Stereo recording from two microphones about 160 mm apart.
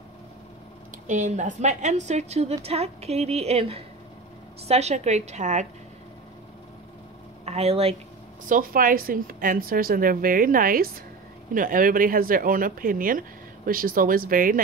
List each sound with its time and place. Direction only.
0.9 s a woman's voice: 50° right (ahead or behind)
7.4 s speech: 40° right (ahead or behind)
8.5 s speech: 60° right (ahead or behind)